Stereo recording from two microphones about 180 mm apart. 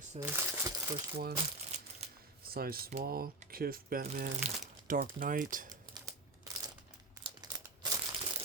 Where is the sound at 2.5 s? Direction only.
55° right (ahead or behind).